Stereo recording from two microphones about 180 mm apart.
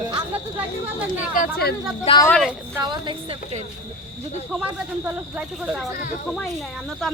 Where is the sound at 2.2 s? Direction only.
5° left (ahead or behind).